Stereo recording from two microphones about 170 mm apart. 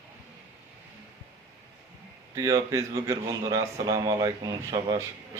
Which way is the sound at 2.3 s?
20° right (ahead or behind).